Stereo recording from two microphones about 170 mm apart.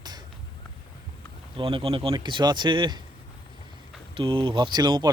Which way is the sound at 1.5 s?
30° right (ahead or behind).